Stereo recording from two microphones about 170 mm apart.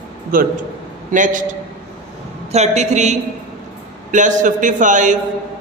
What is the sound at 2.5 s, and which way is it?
A woman's voice, 40° right (ahead or behind).